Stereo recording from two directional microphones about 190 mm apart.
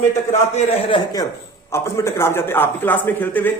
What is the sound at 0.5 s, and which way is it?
Speech, 30° left (ahead or behind).